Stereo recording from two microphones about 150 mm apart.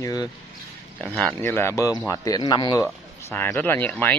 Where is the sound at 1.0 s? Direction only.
5° left (ahead or behind).